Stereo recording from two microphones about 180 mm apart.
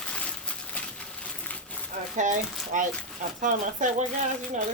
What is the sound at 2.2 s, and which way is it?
Speech, 45° right (ahead or behind).